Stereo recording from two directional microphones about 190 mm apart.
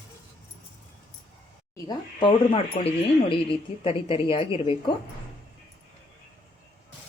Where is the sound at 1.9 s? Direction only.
25° left (ahead or behind).